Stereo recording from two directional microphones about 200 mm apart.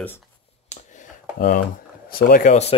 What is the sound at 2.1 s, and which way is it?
Speech, 45° left (ahead or behind).